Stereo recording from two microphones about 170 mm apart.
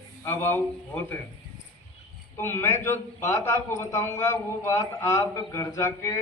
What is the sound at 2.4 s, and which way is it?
A man's voice, 15° left (ahead or behind).